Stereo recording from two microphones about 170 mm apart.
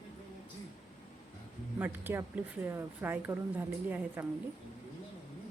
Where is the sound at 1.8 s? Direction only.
10° right (ahead or behind).